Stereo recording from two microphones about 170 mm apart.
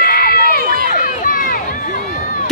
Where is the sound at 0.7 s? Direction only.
60° right (ahead or behind).